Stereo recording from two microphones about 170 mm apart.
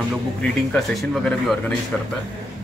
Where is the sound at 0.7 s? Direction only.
Centre (ahead or behind).